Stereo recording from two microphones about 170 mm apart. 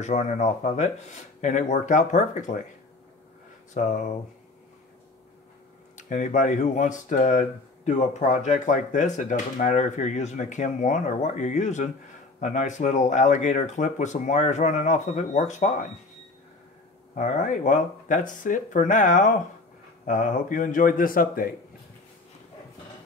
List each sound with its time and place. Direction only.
0.0 s speech: 45° left (ahead or behind)
3.7 s speech: 45° left (ahead or behind)
5.9 s speech: 50° left (ahead or behind)
17.1 s speech: 45° left (ahead or behind)